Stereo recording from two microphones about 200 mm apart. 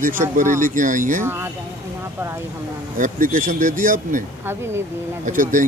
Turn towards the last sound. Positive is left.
turn(degrees=-40)  # may be behind; listen again after turning